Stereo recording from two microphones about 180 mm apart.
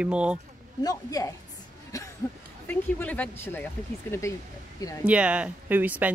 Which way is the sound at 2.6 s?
10° left (ahead or behind).